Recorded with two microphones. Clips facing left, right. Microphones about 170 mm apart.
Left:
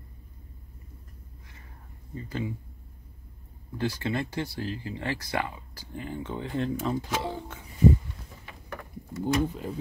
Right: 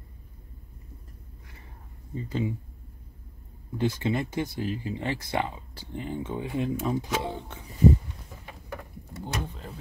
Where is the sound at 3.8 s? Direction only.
20° right (ahead or behind).